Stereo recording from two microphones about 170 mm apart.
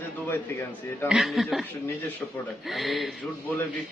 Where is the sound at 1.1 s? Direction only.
Centre (ahead or behind).